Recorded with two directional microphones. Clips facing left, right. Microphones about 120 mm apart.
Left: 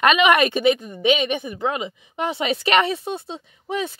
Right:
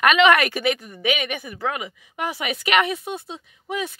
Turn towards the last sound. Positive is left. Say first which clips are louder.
# left 2 dB
turn(degrees=30)  # may be behind; listen again after turning